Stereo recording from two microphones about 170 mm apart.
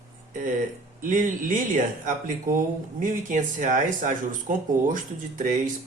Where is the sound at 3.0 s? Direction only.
50° right (ahead or behind).